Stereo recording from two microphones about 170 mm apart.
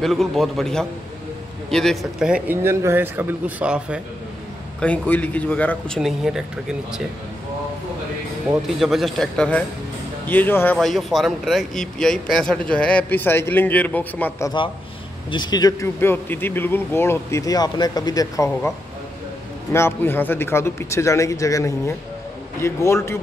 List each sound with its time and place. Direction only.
0.0 s a man's voice: centre (ahead or behind)
4.7 s speech: 10° left (ahead or behind)
5.9 s speech: 5° right (ahead or behind)
8.5 s speech: centre (ahead or behind)
10.8 s speech: centre (ahead or behind)
15.3 s speech: 25° left (ahead or behind)
19.7 s speech: 15° left (ahead or behind)